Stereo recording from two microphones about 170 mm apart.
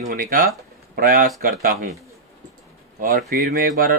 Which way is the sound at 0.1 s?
55° right (ahead or behind).